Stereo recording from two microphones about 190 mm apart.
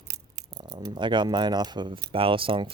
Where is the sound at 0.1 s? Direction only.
20° right (ahead or behind).